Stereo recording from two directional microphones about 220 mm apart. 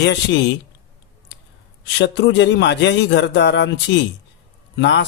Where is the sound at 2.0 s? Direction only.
50° left (ahead or behind).